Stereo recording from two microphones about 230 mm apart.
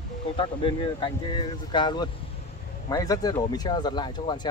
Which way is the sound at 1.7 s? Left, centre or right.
Centre.